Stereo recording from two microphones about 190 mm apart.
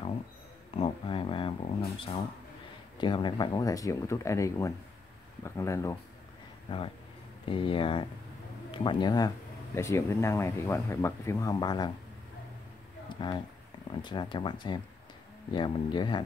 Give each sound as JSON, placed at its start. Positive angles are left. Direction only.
{"t": 0.7, "sound": "speech", "side_deg": 30}
{"t": 6.7, "sound": "speech", "side_deg": 25}
{"t": 13.1, "sound": "speech", "side_deg": 25}